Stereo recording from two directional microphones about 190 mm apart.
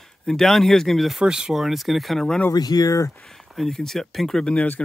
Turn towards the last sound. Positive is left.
turn(degrees=5)  # may be behind; listen again after turning